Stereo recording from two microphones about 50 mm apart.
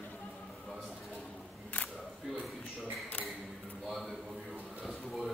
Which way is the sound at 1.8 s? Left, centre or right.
Left.